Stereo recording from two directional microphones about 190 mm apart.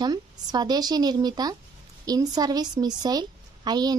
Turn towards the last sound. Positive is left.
turn(degrees=-20)  # may be behind; listen again after turning